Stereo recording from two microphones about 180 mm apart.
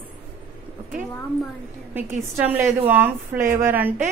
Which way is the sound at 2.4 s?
10° right (ahead or behind).